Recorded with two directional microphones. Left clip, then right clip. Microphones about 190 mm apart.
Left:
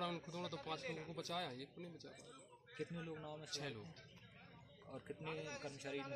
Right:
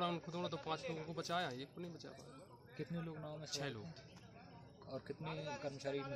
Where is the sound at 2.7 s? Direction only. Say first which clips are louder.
Even; 50° right (ahead or behind).